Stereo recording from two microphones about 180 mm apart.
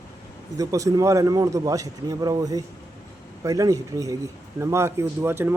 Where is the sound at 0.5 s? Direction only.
20° right (ahead or behind).